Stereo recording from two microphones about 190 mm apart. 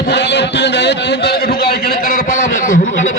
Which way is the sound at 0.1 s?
65° left (ahead or behind).